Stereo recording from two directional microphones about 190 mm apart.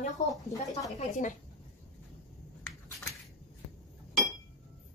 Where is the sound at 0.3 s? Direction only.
20° left (ahead or behind).